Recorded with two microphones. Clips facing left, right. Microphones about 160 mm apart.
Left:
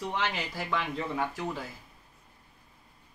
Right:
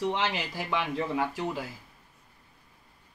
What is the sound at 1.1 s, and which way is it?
Speech, 15° right (ahead or behind).